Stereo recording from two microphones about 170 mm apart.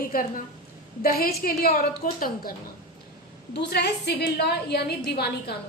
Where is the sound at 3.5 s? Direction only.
80° left.